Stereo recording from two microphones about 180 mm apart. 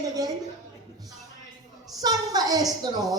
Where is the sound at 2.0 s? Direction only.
20° right (ahead or behind).